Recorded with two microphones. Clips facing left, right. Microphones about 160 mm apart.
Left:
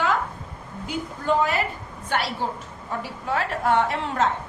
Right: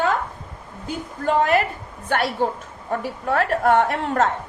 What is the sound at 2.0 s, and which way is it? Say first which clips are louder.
A woman's voice: right 5 dB; 55° right (ahead or behind).